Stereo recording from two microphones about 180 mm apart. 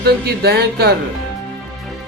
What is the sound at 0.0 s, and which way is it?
Speech, 60° right (ahead or behind).